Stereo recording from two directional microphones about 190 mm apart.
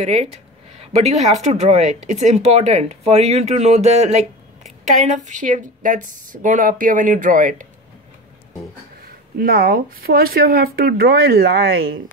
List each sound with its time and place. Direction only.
0.0 s speech: 35° right (ahead or behind)
9.0 s speech: 50° right (ahead or behind)